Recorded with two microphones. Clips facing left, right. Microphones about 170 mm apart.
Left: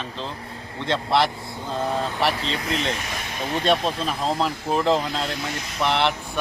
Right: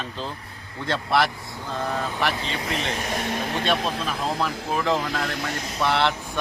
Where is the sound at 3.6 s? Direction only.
40° left (ahead or behind).